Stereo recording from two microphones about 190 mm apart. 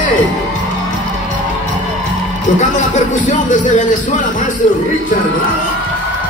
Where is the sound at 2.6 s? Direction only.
40° left (ahead or behind).